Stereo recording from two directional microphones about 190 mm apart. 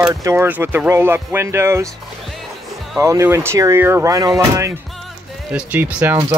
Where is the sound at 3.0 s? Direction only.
15° right (ahead or behind).